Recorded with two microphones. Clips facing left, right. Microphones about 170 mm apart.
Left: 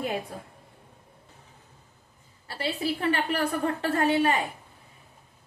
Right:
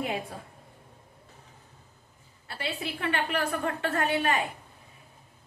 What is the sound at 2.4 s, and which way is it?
A woman's voice, 35° left (ahead or behind).